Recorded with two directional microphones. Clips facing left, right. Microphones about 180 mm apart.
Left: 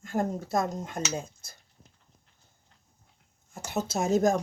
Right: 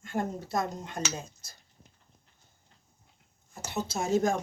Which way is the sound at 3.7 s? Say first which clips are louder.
Left 2 dB; 45° left (ahead or behind).